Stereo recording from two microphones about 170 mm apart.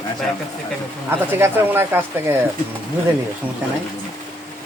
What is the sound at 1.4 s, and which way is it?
Speech, 15° right (ahead or behind).